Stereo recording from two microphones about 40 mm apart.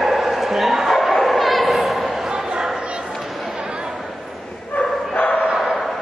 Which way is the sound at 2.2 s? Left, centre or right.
Centre.